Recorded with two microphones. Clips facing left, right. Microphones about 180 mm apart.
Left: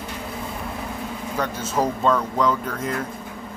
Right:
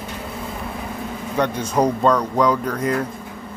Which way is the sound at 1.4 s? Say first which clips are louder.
Right 5 dB; 5° left (ahead or behind).